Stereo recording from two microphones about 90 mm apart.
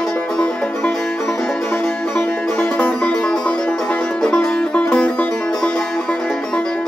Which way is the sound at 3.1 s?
10° left (ahead or behind).